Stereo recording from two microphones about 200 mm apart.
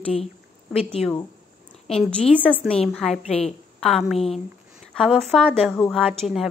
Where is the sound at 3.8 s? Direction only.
Centre (ahead or behind).